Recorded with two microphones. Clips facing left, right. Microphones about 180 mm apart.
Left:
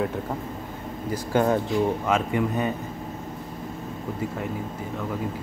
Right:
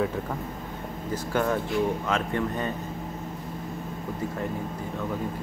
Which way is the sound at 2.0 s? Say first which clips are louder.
Left 3 dB; 10° left (ahead or behind).